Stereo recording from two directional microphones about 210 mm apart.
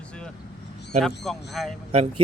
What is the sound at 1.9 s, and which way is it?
Speech, 30° right (ahead or behind).